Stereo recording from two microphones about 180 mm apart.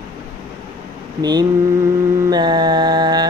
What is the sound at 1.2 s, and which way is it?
Mantra, 20° right (ahead or behind).